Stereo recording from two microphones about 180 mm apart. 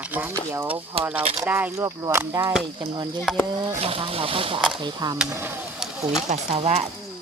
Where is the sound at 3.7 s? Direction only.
30° right (ahead or behind); by 5.5 s 15° right (ahead or behind).